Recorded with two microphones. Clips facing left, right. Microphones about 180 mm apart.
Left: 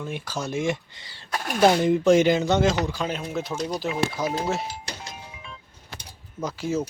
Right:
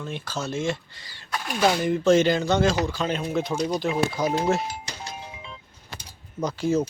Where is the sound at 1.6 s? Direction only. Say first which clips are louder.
Left 3 dB; 20° left (ahead or behind); by 3.5 s 5° left (ahead or behind).